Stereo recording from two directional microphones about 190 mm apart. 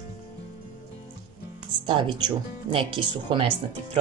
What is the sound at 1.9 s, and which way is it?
Speech, 25° right (ahead or behind).